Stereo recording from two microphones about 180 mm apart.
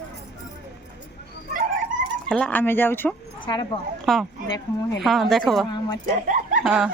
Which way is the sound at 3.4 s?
25° left (ahead or behind).